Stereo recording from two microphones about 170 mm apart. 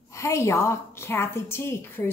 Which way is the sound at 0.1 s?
15° left (ahead or behind).